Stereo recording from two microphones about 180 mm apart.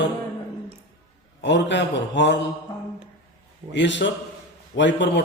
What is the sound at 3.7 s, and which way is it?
A man's voice, 90° left.